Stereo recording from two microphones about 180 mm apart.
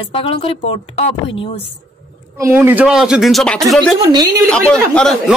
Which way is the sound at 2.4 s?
15° right (ahead or behind).